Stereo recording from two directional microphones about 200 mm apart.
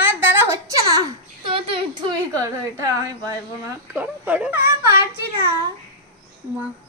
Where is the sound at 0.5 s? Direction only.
15° right (ahead or behind).